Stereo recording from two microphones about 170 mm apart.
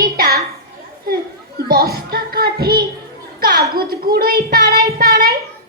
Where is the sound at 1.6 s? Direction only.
60° right (ahead or behind).